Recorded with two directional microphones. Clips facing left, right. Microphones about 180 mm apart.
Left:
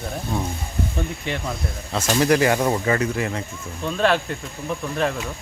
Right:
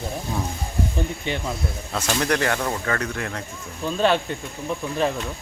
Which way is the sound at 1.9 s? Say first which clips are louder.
Left 5 dB; 5° left (ahead or behind).